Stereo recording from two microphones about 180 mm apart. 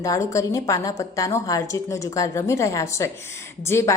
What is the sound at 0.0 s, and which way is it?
A woman's voice, 20° left (ahead or behind).